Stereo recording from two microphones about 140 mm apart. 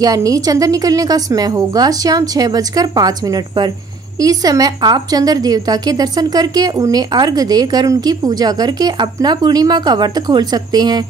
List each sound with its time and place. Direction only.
0.0 s a woman's voice: 25° right (ahead or behind)